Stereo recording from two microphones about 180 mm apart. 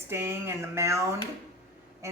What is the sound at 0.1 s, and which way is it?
Speech, 15° right (ahead or behind).